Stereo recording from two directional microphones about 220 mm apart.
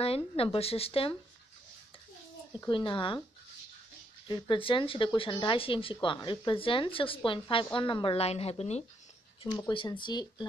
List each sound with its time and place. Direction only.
0.0 s speech: 25° left (ahead or behind)
2.6 s speech: 20° left (ahead or behind)
4.3 s speech: 20° left (ahead or behind)